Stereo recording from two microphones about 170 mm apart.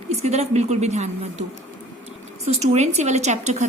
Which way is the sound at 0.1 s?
40° right (ahead or behind).